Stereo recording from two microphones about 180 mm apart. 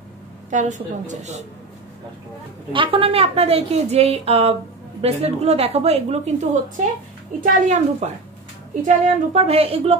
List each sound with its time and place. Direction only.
0.5 s a woman's voice: 45° right (ahead or behind)
2.7 s a woman's voice: 30° right (ahead or behind)
7.6 s a woman's voice: 40° right (ahead or behind)